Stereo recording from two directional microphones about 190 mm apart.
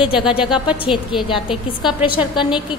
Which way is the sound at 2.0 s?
25° left (ahead or behind).